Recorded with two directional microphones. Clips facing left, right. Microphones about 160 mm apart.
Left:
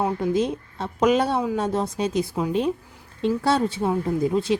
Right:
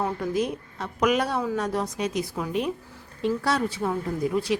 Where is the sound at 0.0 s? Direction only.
25° left (ahead or behind).